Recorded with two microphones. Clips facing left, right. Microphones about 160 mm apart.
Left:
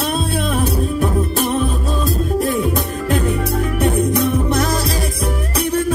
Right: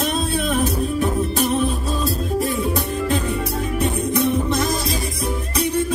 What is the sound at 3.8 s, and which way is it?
Music, 60° left (ahead or behind).